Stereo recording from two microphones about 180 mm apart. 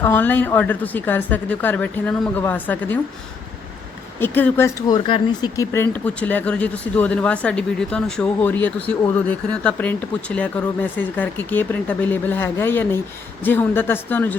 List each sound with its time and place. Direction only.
0.0 s speech: 10° left (ahead or behind)
4.2 s speech: 10° left (ahead or behind)